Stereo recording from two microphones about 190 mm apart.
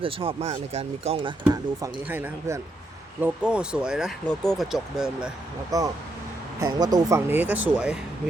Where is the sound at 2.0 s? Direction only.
10° right (ahead or behind).